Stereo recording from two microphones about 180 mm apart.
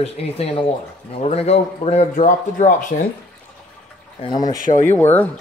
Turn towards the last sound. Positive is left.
turn(degrees=10)  # may be behind; listen again after turning